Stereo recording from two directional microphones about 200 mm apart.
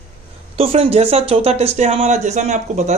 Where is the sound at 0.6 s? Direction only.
30° right (ahead or behind).